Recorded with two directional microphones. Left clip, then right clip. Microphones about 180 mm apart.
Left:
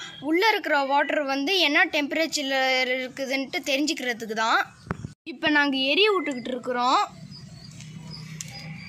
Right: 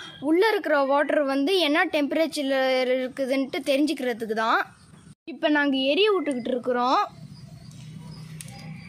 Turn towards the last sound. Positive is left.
turn(degrees=-35)  # may be behind; listen again after turning